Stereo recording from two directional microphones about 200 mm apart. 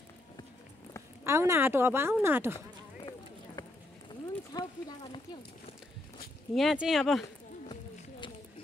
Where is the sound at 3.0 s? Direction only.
20° left (ahead or behind).